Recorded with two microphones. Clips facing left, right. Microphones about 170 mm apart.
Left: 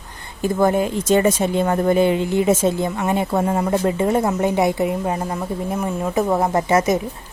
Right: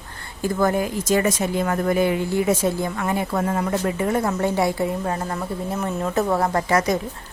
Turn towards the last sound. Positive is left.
turn(degrees=20)  # may be behind; listen again after turning